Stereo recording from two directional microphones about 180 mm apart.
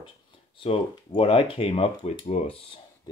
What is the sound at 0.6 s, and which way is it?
Speech, 30° left (ahead or behind).